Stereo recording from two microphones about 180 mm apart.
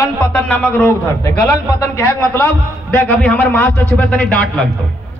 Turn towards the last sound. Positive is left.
turn(degrees=5)  # may be behind; listen again after turning